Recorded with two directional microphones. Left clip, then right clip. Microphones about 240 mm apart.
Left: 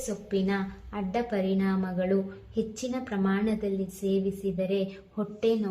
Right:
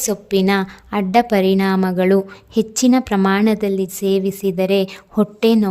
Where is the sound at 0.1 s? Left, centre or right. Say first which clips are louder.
Right 13 dB; right.